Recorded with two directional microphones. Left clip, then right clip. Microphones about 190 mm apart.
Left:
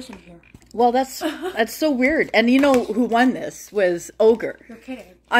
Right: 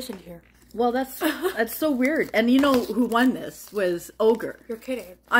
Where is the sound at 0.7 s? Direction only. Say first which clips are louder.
Left 6 dB; 20° left (ahead or behind).